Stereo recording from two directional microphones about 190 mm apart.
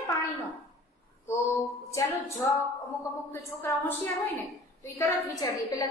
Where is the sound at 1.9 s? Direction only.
15° left (ahead or behind).